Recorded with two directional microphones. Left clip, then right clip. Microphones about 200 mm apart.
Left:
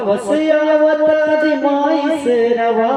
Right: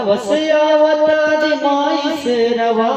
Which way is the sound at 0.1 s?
50° left (ahead or behind).